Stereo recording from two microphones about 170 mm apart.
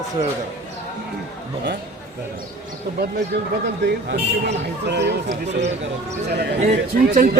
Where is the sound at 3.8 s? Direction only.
90° right.